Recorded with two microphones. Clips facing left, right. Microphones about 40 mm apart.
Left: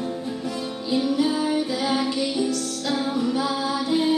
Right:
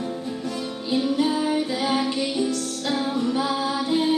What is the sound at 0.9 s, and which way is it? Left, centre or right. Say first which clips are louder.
Music: even; right.